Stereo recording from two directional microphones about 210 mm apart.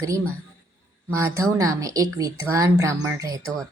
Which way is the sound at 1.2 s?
15° right (ahead or behind).